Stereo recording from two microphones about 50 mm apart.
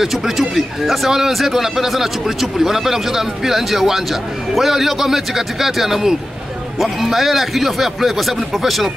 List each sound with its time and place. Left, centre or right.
0.0 s speech: centre